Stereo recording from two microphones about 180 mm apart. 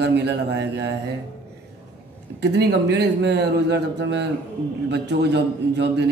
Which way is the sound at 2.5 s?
70° right (ahead or behind).